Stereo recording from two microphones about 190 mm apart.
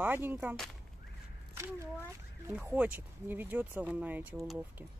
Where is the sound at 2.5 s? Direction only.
10° right (ahead or behind).